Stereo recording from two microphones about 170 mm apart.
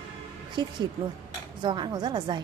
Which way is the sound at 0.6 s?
25° right (ahead or behind).